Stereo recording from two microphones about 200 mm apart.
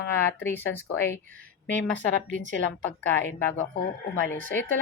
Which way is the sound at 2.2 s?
40° right (ahead or behind).